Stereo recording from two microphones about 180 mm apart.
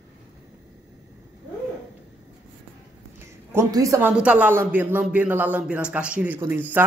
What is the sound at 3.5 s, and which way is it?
A man's voice, 15° right (ahead or behind).